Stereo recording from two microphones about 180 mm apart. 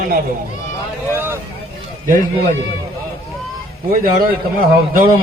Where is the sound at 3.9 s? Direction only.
50° right (ahead or behind).